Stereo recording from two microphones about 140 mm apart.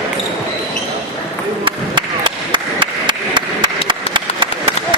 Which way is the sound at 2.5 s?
35° right (ahead or behind).